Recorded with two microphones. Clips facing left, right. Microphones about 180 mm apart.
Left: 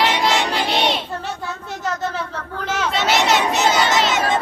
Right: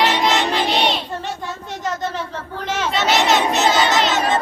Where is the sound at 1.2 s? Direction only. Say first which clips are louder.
Even; 5° left (ahead or behind).